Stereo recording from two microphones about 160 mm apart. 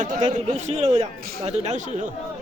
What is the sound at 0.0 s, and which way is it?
A man's voice, 50° right (ahead or behind).